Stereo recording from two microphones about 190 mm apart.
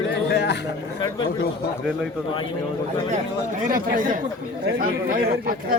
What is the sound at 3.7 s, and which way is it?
Speech, 45° right (ahead or behind).